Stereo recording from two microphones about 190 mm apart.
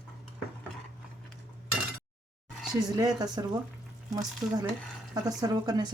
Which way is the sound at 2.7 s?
20° right (ahead or behind).